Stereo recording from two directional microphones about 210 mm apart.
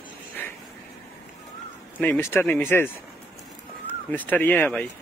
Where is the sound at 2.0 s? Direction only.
10° left (ahead or behind).